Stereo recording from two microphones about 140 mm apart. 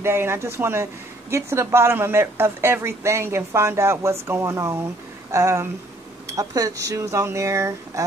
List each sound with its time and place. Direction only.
0.0 s a woman's voice: 20° right (ahead or behind)